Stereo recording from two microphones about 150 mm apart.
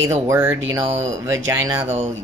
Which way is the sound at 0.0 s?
20° right (ahead or behind).